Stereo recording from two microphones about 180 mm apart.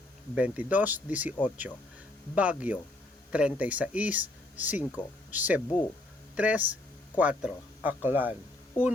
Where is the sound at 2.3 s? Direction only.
5° right (ahead or behind).